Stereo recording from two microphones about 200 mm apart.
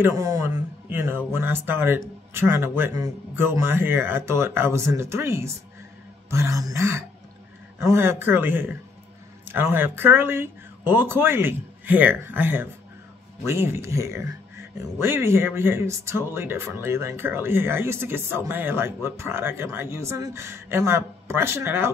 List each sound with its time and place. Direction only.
0.0 s speech: 15° right (ahead or behind)